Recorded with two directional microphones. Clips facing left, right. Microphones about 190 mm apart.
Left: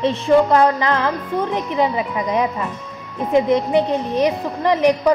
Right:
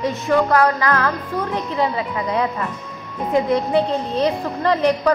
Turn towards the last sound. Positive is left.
turn(degrees=15)  # may be behind; listen again after turning